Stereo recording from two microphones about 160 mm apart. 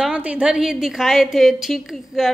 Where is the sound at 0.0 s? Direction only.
5° right (ahead or behind).